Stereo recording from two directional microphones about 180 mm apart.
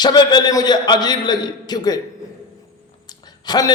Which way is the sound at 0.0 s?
25° left (ahead or behind).